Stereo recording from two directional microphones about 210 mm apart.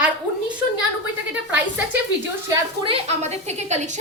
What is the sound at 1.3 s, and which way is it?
Speech, 5° right (ahead or behind).